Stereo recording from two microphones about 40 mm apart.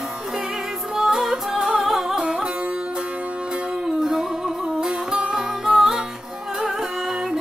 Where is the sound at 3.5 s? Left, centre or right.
Right.